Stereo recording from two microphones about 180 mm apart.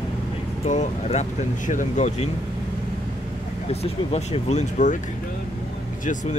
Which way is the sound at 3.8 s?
35° left (ahead or behind).